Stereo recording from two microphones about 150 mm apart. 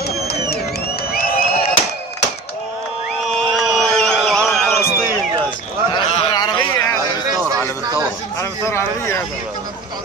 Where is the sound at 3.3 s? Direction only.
Centre (ahead or behind).